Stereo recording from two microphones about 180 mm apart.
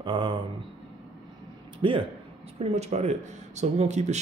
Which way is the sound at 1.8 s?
30° right (ahead or behind).